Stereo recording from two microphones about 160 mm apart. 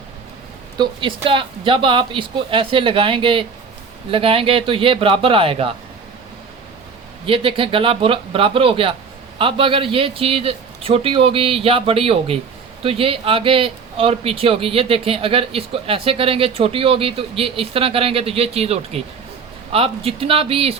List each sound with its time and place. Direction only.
0.8 s speech: 30° right (ahead or behind)
7.3 s speech: 35° right (ahead or behind)